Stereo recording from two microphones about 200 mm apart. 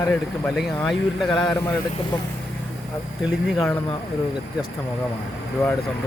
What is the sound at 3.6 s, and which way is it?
Speech, 10° left (ahead or behind).